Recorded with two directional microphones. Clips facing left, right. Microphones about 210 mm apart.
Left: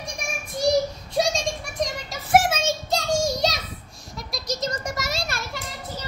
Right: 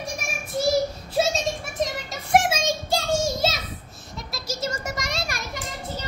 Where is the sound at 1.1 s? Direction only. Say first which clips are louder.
Even; 5° right (ahead or behind).